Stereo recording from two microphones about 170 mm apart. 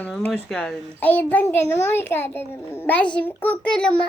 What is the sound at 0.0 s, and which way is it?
A child's voice, 10° left (ahead or behind).